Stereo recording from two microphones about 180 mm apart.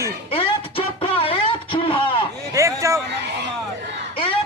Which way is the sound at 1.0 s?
30° left (ahead or behind).